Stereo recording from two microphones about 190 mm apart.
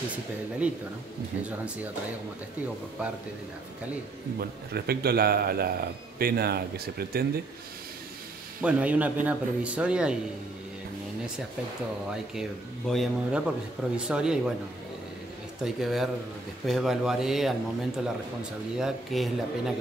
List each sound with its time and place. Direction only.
0.6 s speech: 5° right (ahead or behind)
4.4 s a man's voice: 55° right (ahead or behind)
8.5 s speech: 5° right (ahead or behind)
12.1 s a man's voice: centre (ahead or behind)
15.6 s a man's voice: centre (ahead or behind)